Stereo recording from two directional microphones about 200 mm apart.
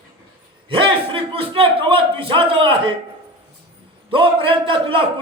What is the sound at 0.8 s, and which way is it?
A man's voice, 25° right (ahead or behind).